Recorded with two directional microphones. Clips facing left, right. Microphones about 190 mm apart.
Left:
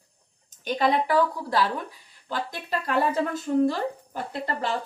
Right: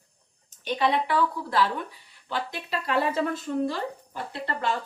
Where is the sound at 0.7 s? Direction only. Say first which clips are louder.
Left 2 dB; 45° left (ahead or behind).